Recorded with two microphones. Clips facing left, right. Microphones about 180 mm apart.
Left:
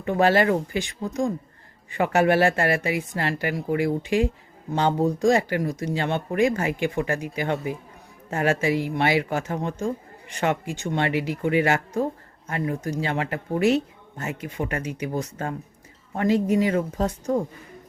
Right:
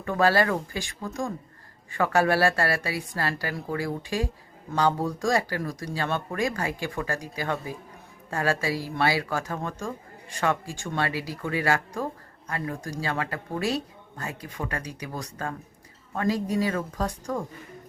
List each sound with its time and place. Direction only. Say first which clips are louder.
0.0 s speech: left 3 dB; 20° left (ahead or behind)